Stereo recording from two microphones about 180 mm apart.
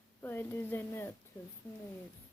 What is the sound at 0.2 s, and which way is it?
Speech, 10° left (ahead or behind).